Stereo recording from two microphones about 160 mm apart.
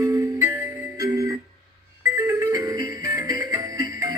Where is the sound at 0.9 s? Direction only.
20° right (ahead or behind).